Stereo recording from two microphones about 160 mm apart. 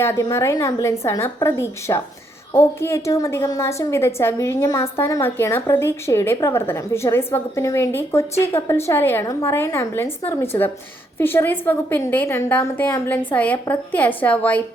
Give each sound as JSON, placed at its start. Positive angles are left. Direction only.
{"t": 0.0, "sound": "a woman's voice", "side_deg": 20}